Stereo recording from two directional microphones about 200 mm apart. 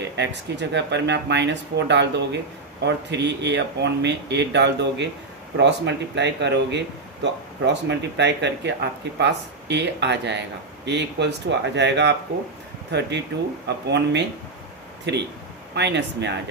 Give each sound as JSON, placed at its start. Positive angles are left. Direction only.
{"t": 0.0, "sound": "speech", "side_deg": -60}